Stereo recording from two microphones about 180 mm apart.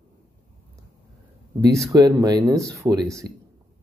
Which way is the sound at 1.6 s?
15° right (ahead or behind).